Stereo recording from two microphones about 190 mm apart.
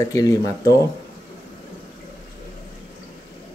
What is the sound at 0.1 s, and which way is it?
Speech, 15° left (ahead or behind).